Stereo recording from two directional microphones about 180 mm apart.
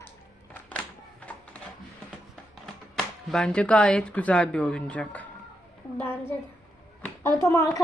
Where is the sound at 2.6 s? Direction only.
Centre (ahead or behind).